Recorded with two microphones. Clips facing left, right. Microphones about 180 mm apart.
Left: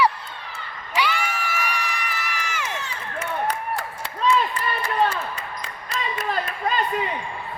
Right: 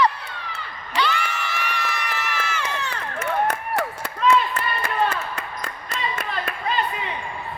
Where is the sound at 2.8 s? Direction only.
65° right (ahead or behind).